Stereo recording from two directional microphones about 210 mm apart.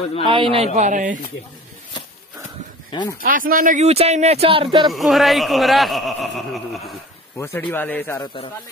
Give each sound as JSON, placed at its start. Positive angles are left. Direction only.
{"t": 0.3, "sound": "a man's voice", "side_deg": -25}
{"t": 0.7, "sound": "speech", "side_deg": -35}
{"t": 2.9, "sound": "speech", "side_deg": 20}
{"t": 3.2, "sound": "speech", "side_deg": -40}
{"t": 4.8, "sound": "speech", "side_deg": 0}
{"t": 7.3, "sound": "speech", "side_deg": 10}